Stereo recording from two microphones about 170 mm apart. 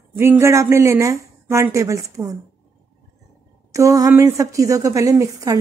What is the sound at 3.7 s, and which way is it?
A woman's voice, 20° right (ahead or behind).